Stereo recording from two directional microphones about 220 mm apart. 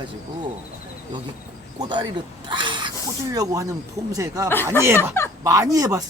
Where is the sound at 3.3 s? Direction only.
15° right (ahead or behind).